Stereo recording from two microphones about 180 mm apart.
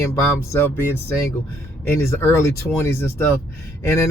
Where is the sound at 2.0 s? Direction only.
15° left (ahead or behind).